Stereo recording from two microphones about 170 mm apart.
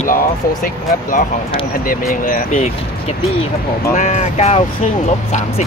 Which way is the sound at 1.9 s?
55° left (ahead or behind).